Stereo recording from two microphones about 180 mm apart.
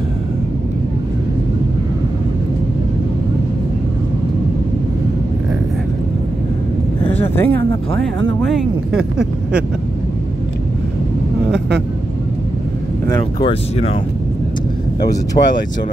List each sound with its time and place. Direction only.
7.1 s a sound: 10° left (ahead or behind)
13.1 s speech: 30° left (ahead or behind)
15.4 s speech: 40° left (ahead or behind)